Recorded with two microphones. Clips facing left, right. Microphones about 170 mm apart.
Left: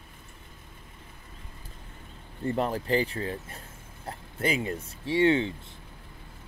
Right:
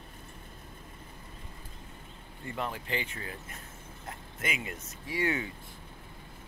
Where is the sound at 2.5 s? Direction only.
40° left (ahead or behind).